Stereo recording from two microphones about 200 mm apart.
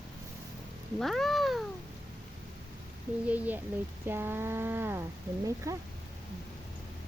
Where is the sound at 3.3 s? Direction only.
10° right (ahead or behind).